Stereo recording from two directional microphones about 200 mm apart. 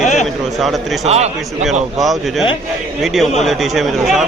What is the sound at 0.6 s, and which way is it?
Speech, centre (ahead or behind).